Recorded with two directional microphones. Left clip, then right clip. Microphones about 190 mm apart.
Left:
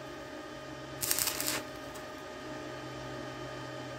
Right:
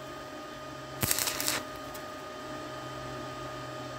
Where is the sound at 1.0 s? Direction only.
20° right (ahead or behind).